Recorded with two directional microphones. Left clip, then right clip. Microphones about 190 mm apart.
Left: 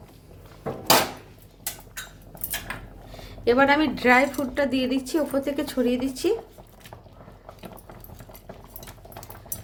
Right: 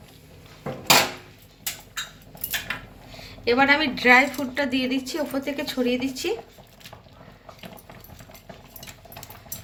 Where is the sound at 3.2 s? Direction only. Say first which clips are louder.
Left 1 dB; 50° left (ahead or behind).